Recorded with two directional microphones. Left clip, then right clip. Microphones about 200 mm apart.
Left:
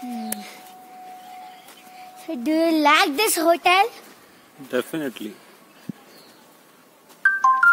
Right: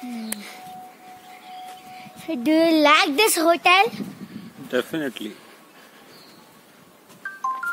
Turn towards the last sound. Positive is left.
turn(degrees=45)  # may be behind; listen again after turning